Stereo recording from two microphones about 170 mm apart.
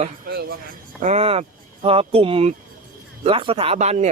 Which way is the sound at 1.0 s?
40° right (ahead or behind).